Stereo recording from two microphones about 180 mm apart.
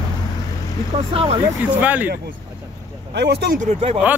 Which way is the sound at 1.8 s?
10° right (ahead or behind).